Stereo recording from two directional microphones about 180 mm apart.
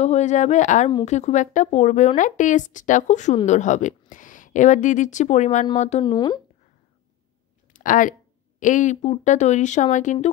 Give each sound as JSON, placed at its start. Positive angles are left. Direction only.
{"t": 0.0, "sound": "speech", "side_deg": 40}
{"t": 6.0, "sound": "speech", "side_deg": 25}
{"t": 7.7, "sound": "a sound", "side_deg": 50}
{"t": 8.5, "sound": "speech", "side_deg": 45}